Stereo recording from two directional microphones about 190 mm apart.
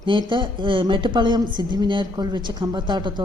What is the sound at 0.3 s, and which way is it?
A woman's voice, 25° right (ahead or behind).